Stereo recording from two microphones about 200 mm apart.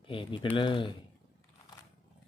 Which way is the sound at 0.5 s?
25° left (ahead or behind).